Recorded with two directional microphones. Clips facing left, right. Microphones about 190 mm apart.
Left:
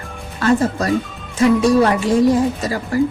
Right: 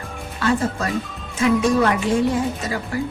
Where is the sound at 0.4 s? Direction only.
40° left (ahead or behind).